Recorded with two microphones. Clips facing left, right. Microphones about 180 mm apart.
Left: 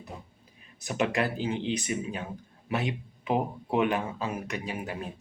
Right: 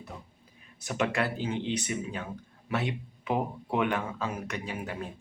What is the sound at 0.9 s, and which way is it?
A man's voice, 20° left (ahead or behind).